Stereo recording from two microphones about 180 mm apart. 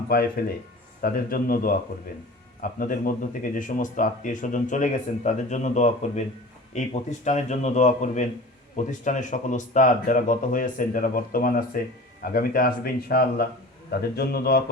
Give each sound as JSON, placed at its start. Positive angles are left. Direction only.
{"t": 0.1, "sound": "speech", "side_deg": 60}